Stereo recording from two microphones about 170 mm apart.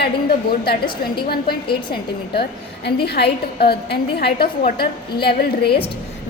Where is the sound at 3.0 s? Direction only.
75° left (ahead or behind).